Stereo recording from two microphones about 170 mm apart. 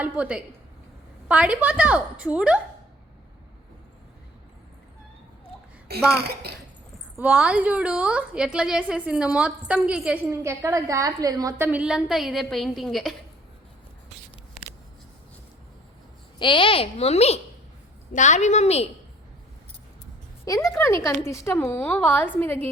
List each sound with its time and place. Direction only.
0.0 s a woman's voice: 5° right (ahead or behind)
5.9 s speech: 65° right (ahead or behind)
7.2 s a woman's voice: 5° right (ahead or behind)
10.2 s a woman's voice: 15° right (ahead or behind); by 13.1 s centre (ahead or behind)
16.4 s a child's voice: 30° left (ahead or behind)
20.4 s a woman's voice: 20° left (ahead or behind)